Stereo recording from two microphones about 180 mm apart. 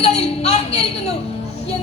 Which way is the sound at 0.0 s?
35° left (ahead or behind).